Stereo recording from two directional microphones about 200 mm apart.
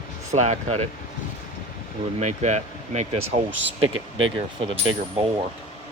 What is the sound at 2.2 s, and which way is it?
Speech, 35° right (ahead or behind).